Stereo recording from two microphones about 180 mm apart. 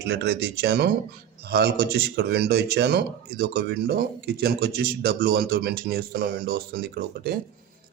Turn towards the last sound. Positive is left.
turn(degrees=-55)  # may be behind; listen again after turning